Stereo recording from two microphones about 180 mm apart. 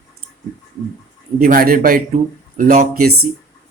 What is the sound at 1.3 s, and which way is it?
Speech, 50° right (ahead or behind).